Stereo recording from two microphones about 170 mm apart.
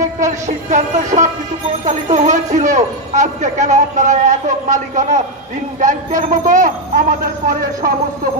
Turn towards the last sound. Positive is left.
turn(degrees=-50)  # may be behind; listen again after turning